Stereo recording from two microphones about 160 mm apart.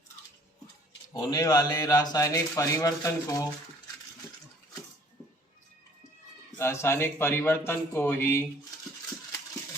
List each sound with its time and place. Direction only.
1.1 s a man's voice: 25° left (ahead or behind)
6.6 s a man's voice: 15° left (ahead or behind)